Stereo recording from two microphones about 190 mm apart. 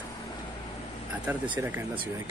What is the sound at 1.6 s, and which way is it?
Speech, 15° right (ahead or behind).